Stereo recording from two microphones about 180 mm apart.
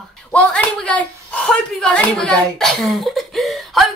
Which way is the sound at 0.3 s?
5° left (ahead or behind).